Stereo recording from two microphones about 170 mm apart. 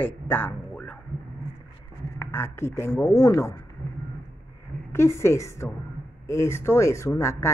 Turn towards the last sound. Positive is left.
turn(degrees=15)  # may be behind; listen again after turning